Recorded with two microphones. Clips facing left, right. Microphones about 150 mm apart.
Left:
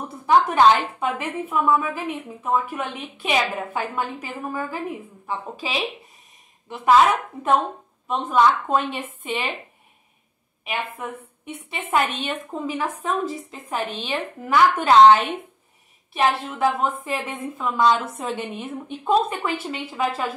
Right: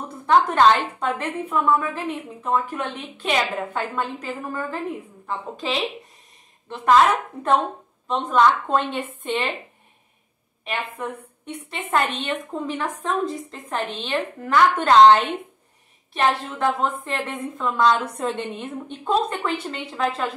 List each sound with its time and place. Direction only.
0.3 s a woman's voice: 5° left (ahead or behind)
8.1 s a woman's voice: 5° left (ahead or behind)
10.6 s a woman's voice: 5° left (ahead or behind)